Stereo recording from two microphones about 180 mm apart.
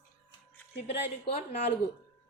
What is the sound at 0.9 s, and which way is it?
Speech, 30° left (ahead or behind).